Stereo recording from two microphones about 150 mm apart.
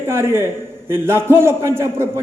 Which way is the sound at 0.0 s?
15° right (ahead or behind).